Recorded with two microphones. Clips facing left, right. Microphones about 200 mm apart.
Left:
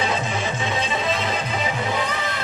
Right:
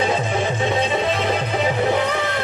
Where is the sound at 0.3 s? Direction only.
55° right (ahead or behind).